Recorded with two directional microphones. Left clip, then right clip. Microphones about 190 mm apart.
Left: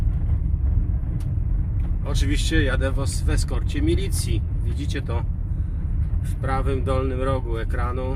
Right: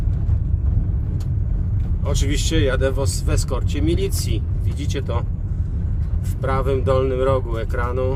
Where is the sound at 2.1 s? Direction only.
20° right (ahead or behind).